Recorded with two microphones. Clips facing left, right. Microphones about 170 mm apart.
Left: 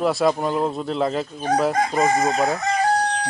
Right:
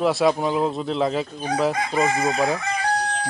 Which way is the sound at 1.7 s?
45° left (ahead or behind).